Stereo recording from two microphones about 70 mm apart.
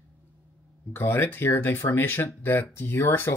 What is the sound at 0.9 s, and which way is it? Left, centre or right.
Speech, left.